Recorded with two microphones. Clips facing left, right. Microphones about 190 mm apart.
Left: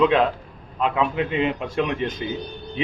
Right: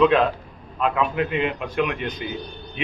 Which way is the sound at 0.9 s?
30° left (ahead or behind).